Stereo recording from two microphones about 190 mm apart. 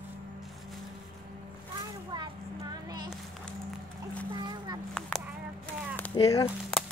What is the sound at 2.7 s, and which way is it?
Music, 20° right (ahead or behind).